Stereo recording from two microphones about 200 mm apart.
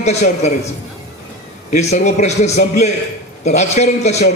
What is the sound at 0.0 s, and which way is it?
Speech, 35° left (ahead or behind).